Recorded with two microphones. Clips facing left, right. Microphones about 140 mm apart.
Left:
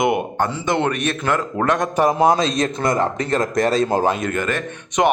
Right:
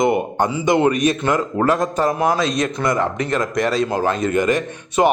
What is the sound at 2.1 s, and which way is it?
A man's voice, 25° left (ahead or behind).